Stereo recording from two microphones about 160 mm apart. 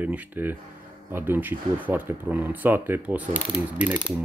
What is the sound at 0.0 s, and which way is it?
Speech, 10° right (ahead or behind).